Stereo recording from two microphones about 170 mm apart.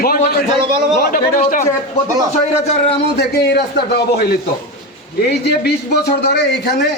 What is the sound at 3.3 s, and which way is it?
Speech, 70° left (ahead or behind).